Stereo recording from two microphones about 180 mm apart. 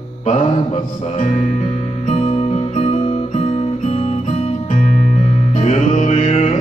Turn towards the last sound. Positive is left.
turn(degrees=40)  # may be behind; listen again after turning